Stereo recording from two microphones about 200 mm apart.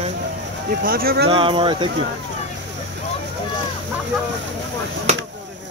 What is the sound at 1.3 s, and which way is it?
Speech, 25° right (ahead or behind).